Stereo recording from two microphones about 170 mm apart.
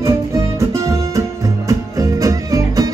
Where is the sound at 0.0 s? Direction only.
15° right (ahead or behind).